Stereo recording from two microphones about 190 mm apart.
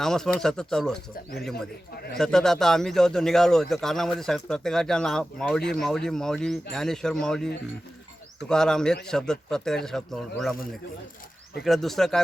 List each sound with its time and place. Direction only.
0.0 s a man's voice: 5° left (ahead or behind)
1.1 s speech: 55° left (ahead or behind)
2.1 s a man's voice: 5° left (ahead or behind)
11.6 s a man's voice: centre (ahead or behind)